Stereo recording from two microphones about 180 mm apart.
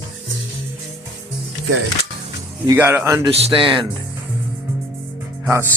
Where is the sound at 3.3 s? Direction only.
35° right (ahead or behind).